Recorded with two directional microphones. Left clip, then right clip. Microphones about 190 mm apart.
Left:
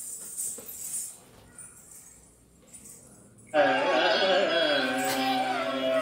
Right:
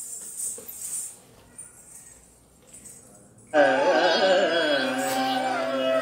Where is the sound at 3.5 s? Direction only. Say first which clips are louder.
Right 4 dB; 30° right (ahead or behind).